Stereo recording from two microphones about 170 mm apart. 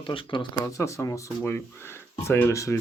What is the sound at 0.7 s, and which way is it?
Speech, 20° left (ahead or behind).